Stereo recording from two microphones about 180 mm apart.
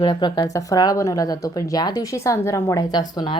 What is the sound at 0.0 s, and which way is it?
Speech, 25° left (ahead or behind).